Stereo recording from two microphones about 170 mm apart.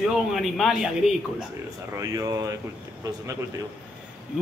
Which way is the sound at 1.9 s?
20° right (ahead or behind).